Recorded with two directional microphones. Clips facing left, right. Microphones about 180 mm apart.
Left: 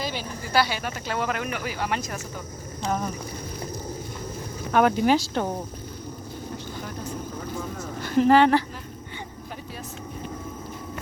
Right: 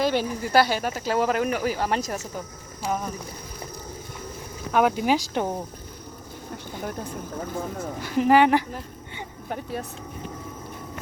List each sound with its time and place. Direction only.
0.0 s speech: 60° right (ahead or behind)
0.5 s speech: 45° right (ahead or behind)
2.8 s speech: 5° right (ahead or behind)
4.7 s cricket: 5° right (ahead or behind)
8.0 s cricket: 5° right (ahead or behind)